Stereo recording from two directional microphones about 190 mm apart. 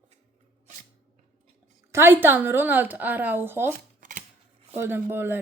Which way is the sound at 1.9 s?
10° right (ahead or behind).